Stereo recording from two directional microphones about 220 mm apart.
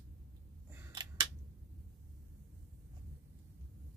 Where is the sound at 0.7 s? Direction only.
15° right (ahead or behind).